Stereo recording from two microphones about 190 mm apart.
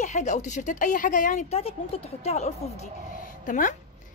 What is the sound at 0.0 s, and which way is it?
A woman's voice, 40° left (ahead or behind).